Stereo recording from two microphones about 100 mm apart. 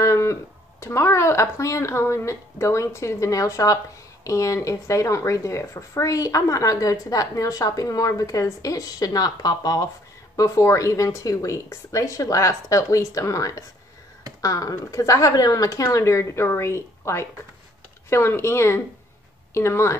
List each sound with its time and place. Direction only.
0.0 s speech: 30° left (ahead or behind)